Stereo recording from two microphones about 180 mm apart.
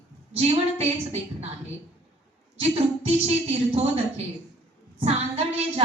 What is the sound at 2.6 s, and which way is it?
A woman's voice, 35° right (ahead or behind).